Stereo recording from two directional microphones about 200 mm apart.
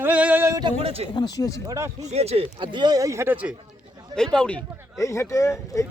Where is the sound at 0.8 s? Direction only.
30° right (ahead or behind).